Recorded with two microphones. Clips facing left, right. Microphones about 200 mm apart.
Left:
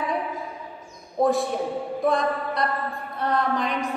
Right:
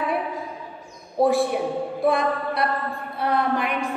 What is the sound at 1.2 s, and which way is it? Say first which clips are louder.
A woman's voice: right 2 dB; 10° right (ahead or behind).